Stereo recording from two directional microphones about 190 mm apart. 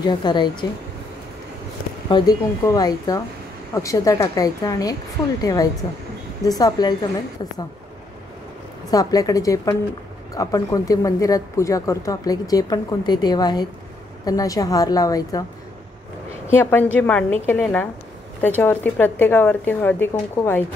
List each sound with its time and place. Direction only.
0.0 s speech: 25° left (ahead or behind)
2.0 s speech: 20° left (ahead or behind)
8.9 s speech: 20° left (ahead or behind)
16.5 s speech: 10° left (ahead or behind)